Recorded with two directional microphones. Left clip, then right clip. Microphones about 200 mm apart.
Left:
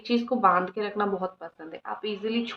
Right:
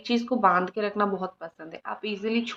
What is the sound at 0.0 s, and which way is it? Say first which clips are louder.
A woman's voice: even; 25° right (ahead or behind).